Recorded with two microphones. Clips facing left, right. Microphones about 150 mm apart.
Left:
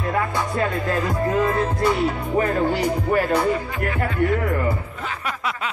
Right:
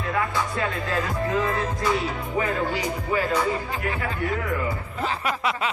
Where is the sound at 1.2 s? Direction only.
45° left (ahead or behind).